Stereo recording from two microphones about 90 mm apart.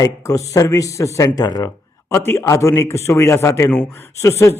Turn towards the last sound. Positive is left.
turn(degrees=35)  # may be behind; listen again after turning